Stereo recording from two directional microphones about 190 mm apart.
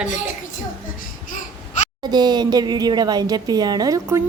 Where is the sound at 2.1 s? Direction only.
20° right (ahead or behind).